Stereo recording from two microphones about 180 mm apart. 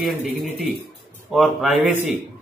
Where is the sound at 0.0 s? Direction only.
Centre (ahead or behind).